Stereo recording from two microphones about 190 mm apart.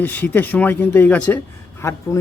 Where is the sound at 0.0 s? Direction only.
10° left (ahead or behind).